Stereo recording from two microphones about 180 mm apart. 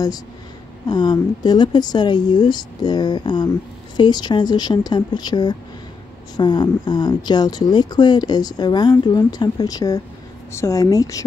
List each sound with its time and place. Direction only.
0.8 s speech: 25° left (ahead or behind)